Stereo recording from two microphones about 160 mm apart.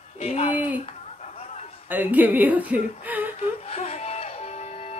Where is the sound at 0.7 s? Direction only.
45° left (ahead or behind).